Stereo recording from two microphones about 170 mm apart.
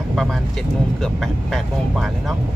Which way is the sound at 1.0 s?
Centre (ahead or behind).